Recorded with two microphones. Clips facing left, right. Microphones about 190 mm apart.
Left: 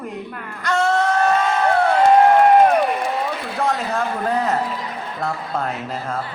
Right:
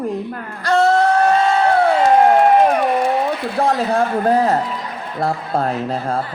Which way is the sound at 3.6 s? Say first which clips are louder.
Right 5 dB; 35° right (ahead or behind).